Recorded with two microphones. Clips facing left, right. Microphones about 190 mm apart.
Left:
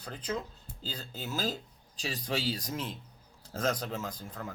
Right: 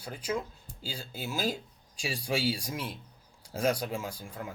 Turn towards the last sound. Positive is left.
turn(degrees=-10)  # may be behind; listen again after turning